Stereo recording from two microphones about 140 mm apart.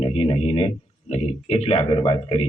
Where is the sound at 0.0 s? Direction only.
40° left (ahead or behind).